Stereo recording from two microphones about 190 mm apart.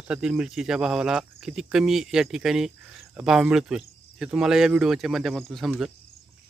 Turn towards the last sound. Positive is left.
turn(degrees=0)  # may be behind; listen again after turning